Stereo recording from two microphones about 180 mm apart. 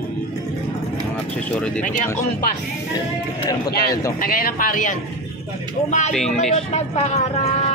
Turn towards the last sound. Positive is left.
turn(degrees=35)  # may be behind; listen again after turning